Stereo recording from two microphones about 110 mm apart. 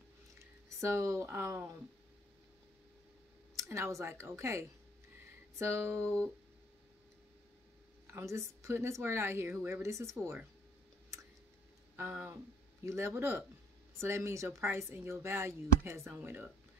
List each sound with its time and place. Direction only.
0.7 s speech: 25° right (ahead or behind)
3.5 s speech: 25° right (ahead or behind)
8.1 s speech: 25° right (ahead or behind)
12.0 s speech: 20° right (ahead or behind)